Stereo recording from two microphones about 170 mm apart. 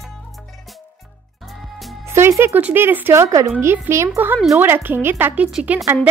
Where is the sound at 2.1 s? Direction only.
15° right (ahead or behind).